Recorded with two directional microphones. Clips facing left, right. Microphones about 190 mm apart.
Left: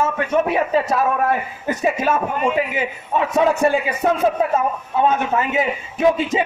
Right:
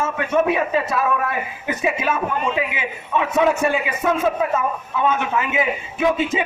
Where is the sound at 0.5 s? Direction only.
40° left (ahead or behind).